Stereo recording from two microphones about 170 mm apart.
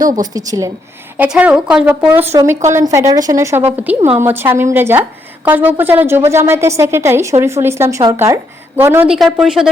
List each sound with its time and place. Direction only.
0.3 s a woman's voice: 20° right (ahead or behind)
1.1 s a woman's voice: 10° right (ahead or behind)
9.0 s speech: centre (ahead or behind)